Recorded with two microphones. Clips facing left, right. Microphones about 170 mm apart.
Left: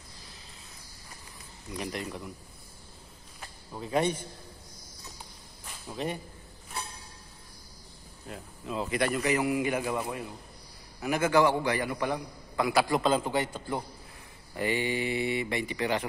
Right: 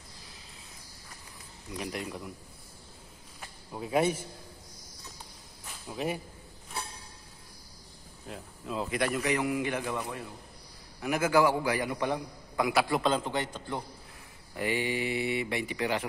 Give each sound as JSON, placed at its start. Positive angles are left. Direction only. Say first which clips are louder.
{"t": 1.7, "sound": "a man's voice", "louder": "left 1 dB", "side_deg": 0}
{"t": 3.3, "sound": "a sound", "louder": "right 1 dB", "side_deg": -5}
{"t": 5.7, "sound": "speech", "louder": "right 1 dB", "side_deg": -5}
{"t": 8.3, "sound": "a man's voice", "louder": "left 1 dB", "side_deg": 0}
{"t": 11.0, "sound": "a man's voice", "louder": "left 1 dB", "side_deg": -5}
{"t": 11.9, "sound": "a man's voice", "louder": "even", "side_deg": -20}
{"t": 12.7, "sound": "a man's voice", "louder": "left 3 dB", "side_deg": 0}
{"t": 14.5, "sound": "a man's voice", "louder": "left 1 dB", "side_deg": -5}